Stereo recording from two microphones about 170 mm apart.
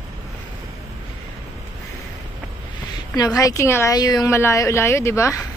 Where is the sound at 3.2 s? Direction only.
20° left (ahead or behind).